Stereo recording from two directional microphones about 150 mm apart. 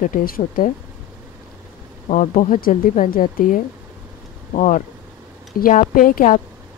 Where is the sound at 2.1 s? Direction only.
60° left (ahead or behind).